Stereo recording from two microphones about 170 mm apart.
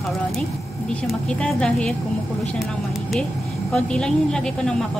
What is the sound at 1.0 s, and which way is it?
Speech, 5° left (ahead or behind).